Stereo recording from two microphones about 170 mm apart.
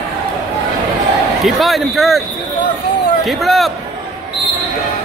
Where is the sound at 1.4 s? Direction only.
Centre (ahead or behind).